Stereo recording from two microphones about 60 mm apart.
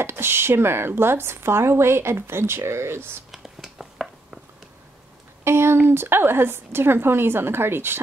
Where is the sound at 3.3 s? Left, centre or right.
Centre.